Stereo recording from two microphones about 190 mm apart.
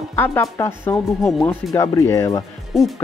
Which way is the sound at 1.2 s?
Centre (ahead or behind).